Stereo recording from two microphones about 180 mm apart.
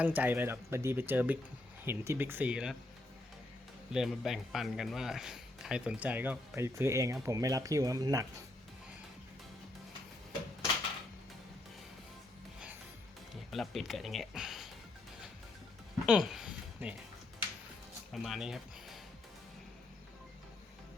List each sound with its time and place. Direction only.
0.0 s speech: 10° right (ahead or behind)
3.9 s speech: centre (ahead or behind); by 8.3 s 20° right (ahead or behind)
13.3 s speech: centre (ahead or behind)
16.0 s speech: centre (ahead or behind)
18.1 s speech: centre (ahead or behind)